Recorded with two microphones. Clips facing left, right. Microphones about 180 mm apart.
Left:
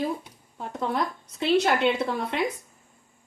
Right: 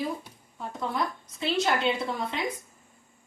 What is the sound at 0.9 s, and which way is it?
A woman's voice, 65° left (ahead or behind).